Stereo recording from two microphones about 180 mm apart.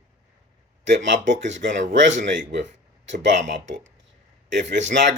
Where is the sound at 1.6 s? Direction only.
45° right (ahead or behind).